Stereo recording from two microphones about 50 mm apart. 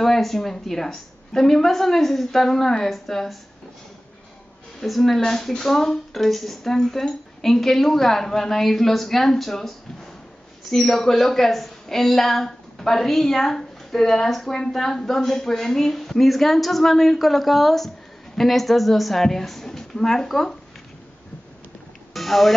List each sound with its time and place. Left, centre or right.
0.0 s a woman's voice: centre
4.7 s a woman's voice: centre
22.1 s a sound: centre